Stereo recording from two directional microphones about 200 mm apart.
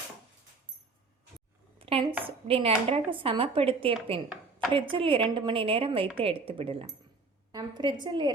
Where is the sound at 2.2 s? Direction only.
30° right (ahead or behind).